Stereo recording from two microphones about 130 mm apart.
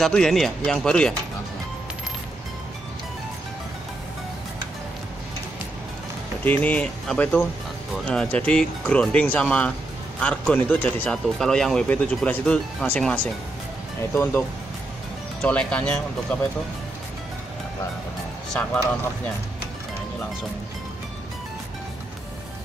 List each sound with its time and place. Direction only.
0.0 s speech: 5° left (ahead or behind)
6.4 s speech: 10° left (ahead or behind)
14.1 s speech: 20° left (ahead or behind)
15.4 s speech: 10° left (ahead or behind)